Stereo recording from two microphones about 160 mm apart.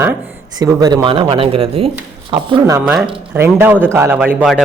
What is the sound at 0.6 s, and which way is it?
Speech, 25° right (ahead or behind).